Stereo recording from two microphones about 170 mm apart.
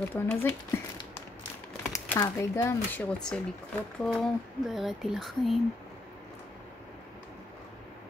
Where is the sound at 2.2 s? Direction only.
15° left (ahead or behind); by 5.5 s centre (ahead or behind).